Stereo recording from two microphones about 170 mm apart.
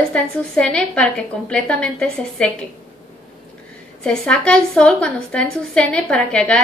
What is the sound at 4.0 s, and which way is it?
A woman's voice, 5° left (ahead or behind).